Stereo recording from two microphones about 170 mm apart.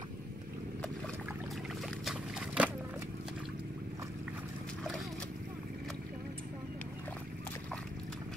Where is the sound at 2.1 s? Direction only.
5° right (ahead or behind).